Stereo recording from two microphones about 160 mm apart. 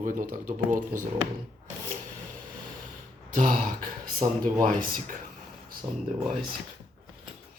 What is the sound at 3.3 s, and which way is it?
Speech, 55° right (ahead or behind).